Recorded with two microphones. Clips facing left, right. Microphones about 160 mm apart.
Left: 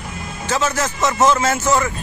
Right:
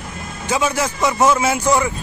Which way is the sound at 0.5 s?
10° right (ahead or behind).